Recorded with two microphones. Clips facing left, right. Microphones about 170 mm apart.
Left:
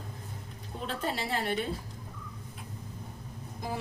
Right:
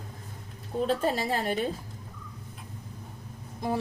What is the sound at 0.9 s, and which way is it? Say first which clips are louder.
Speech: right 4 dB; 45° right (ahead or behind).